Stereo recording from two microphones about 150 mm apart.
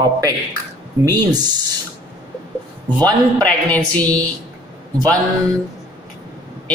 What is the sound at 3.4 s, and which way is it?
Speech, 10° left (ahead or behind).